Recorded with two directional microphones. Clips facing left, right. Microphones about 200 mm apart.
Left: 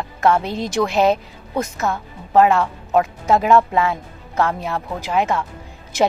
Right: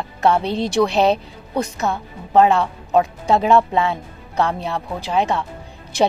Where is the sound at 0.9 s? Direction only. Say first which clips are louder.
Left 4 dB; centre (ahead or behind).